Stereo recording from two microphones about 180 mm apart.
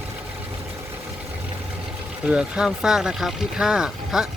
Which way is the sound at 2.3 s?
5° right (ahead or behind).